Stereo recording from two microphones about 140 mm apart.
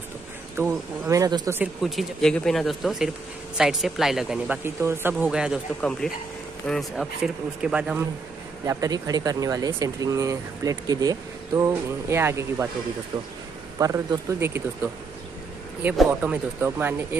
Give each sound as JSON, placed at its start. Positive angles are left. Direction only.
{"t": 0.6, "sound": "speech", "side_deg": -20}
{"t": 1.8, "sound": "speech", "side_deg": 0}
{"t": 4.6, "sound": "speech", "side_deg": -15}
{"t": 5.8, "sound": "speech", "side_deg": 5}
{"t": 8.6, "sound": "speech", "side_deg": -25}
{"t": 13.7, "sound": "speech", "side_deg": -25}
{"t": 16.1, "sound": "speech", "side_deg": -10}